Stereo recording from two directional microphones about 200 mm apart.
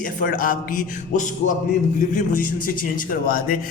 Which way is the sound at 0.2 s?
45° left (ahead or behind).